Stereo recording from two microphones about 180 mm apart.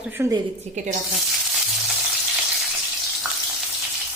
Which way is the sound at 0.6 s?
40° right (ahead or behind).